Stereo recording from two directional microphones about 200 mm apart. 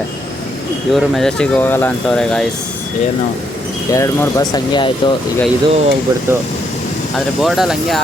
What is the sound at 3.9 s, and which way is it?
Speech, 15° left (ahead or behind).